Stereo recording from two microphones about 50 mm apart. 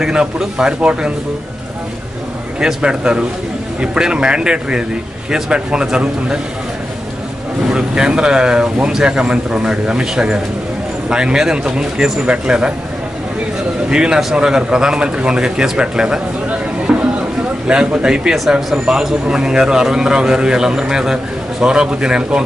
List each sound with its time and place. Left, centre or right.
0.0 s a man's voice: centre
2.6 s a man's voice: centre
7.6 s a man's voice: centre
13.8 s a man's voice: centre
16.4 s a sound: right
17.6 s a man's voice: centre